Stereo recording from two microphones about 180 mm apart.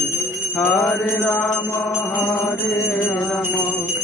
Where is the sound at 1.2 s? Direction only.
Centre (ahead or behind).